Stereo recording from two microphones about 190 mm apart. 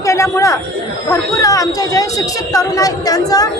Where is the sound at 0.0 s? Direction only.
15° left (ahead or behind).